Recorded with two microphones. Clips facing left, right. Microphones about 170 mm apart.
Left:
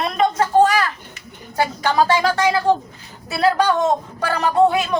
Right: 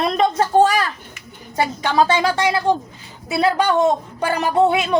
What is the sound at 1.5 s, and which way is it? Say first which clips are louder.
A woman's voice: even; 20° right (ahead or behind).